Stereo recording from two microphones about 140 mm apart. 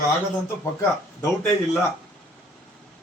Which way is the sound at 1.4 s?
5° left (ahead or behind).